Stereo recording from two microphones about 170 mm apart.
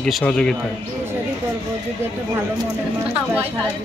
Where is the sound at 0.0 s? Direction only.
5° left (ahead or behind).